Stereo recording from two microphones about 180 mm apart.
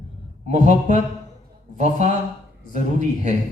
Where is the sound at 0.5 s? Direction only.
40° right (ahead or behind).